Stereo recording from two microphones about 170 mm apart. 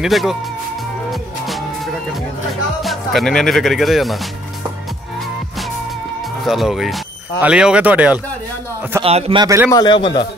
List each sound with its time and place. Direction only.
0.0 s speech: centre (ahead or behind)
2.8 s speech: centre (ahead or behind)
6.4 s speech: centre (ahead or behind)
9.0 s speech: 30° right (ahead or behind)
9.7 s a man's voice: 25° left (ahead or behind)